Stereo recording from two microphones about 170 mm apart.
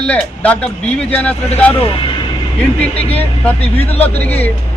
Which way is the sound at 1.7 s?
30° left (ahead or behind).